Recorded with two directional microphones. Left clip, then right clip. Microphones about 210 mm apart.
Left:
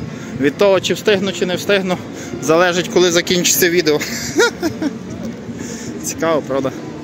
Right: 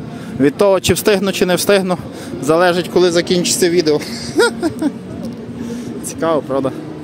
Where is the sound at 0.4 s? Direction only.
25° right (ahead or behind).